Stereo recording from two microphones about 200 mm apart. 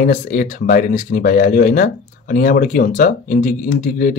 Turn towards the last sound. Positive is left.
turn(degrees=40)  # may be behind; listen again after turning